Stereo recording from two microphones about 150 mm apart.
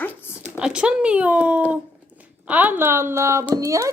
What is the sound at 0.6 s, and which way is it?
A woman's voice, 5° right (ahead or behind).